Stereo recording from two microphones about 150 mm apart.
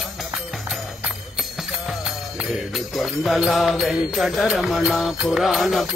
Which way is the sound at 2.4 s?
Centre (ahead or behind).